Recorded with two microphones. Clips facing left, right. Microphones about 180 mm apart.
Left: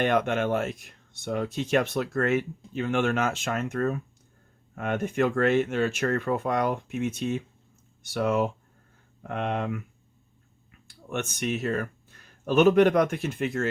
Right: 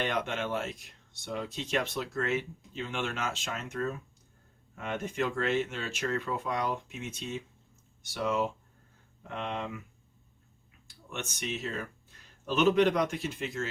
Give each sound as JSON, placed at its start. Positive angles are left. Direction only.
{"t": 0.0, "sound": "speech", "side_deg": 55}
{"t": 11.1, "sound": "speech", "side_deg": 55}